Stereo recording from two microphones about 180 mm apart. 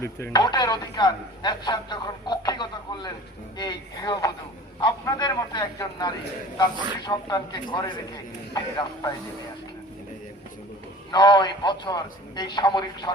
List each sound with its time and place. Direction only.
0.0 s speech: 15° left (ahead or behind)
11.1 s speech: 25° left (ahead or behind)